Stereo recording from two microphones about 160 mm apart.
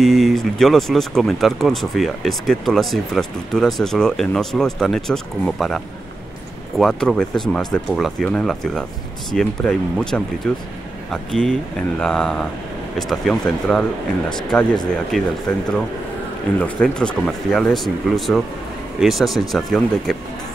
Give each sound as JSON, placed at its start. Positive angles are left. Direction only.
{"t": 0.0, "sound": "speech", "side_deg": 0}
{"t": 6.8, "sound": "speech", "side_deg": 5}
{"t": 15.0, "sound": "speech", "side_deg": 0}
{"t": 16.5, "sound": "speech", "side_deg": 10}